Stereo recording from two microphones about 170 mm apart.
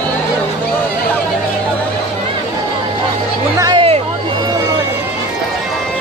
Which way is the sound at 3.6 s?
30° right (ahead or behind).